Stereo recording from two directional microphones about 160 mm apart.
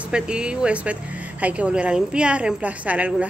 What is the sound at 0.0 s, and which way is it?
Speech, 5° right (ahead or behind).